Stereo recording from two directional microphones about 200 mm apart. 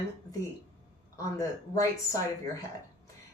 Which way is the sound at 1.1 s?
15° left (ahead or behind).